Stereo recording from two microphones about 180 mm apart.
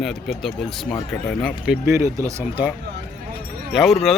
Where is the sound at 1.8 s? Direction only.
15° right (ahead or behind).